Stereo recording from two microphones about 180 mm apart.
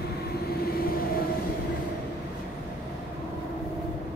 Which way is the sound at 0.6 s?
55° left (ahead or behind).